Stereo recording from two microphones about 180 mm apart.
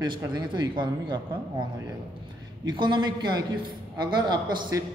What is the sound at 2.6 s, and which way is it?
A man's voice, 25° right (ahead or behind).